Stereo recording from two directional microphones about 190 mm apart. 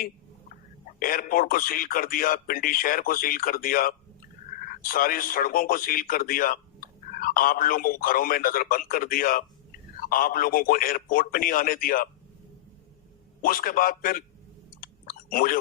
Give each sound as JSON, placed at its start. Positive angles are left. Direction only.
{"t": 0.9, "sound": "speech", "side_deg": 50}
{"t": 13.4, "sound": "speech", "side_deg": 50}
{"t": 14.8, "sound": "chewing", "side_deg": 50}